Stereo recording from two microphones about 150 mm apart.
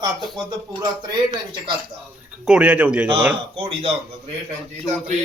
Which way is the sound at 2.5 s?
10° right (ahead or behind).